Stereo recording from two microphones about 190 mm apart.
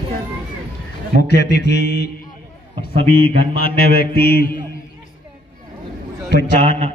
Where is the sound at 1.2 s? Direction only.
65° left (ahead or behind).